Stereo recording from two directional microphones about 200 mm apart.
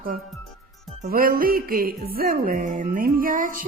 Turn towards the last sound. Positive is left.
turn(degrees=-45)  # may be behind; listen again after turning